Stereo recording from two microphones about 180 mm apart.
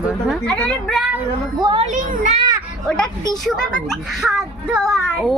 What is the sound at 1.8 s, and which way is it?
Speech, 45° right (ahead or behind).